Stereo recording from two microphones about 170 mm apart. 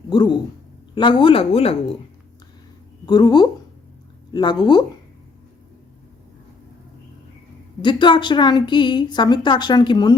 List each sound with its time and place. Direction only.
0.1 s a woman's voice: 25° left (ahead or behind)
3.1 s a woman's voice: 25° left (ahead or behind)
7.8 s a woman's voice: 25° left (ahead or behind)